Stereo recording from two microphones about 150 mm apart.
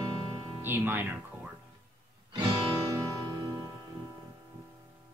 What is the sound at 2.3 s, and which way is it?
Music, 25° right (ahead or behind).